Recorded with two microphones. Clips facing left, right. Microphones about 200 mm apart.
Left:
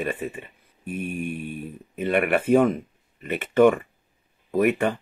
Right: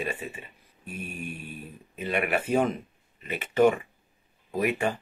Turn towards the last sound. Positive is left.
turn(degrees=55)  # may be behind; listen again after turning